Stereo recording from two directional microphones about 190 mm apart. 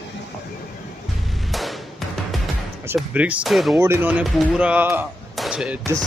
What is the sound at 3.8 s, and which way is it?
Speech, 10° right (ahead or behind).